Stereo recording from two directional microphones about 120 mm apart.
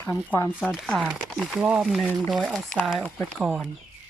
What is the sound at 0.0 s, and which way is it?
Speech, 20° left (ahead or behind).